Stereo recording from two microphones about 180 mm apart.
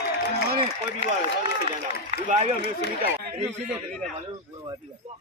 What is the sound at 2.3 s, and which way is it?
Speech, 45° right (ahead or behind).